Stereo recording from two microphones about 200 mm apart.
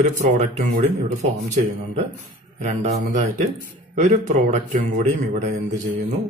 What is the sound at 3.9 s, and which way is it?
Speech, 40° right (ahead or behind).